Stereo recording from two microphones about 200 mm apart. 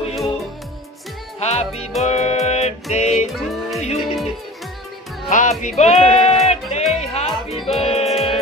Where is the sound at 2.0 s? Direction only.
30° left (ahead or behind).